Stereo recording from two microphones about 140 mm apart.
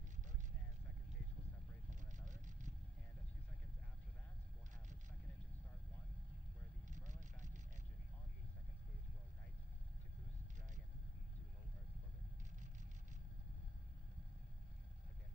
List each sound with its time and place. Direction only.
1.9 s vehicle: 60° right (ahead or behind)
6.9 s vehicle: 60° right (ahead or behind)